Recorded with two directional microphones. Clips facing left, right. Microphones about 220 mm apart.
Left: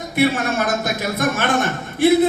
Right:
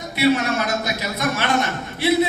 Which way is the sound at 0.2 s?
50° left (ahead or behind).